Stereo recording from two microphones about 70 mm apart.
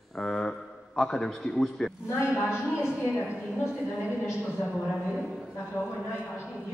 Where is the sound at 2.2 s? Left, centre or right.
Left.